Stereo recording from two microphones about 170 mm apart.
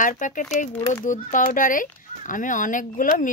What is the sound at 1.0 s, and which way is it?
A woman's voice, 50° left (ahead or behind).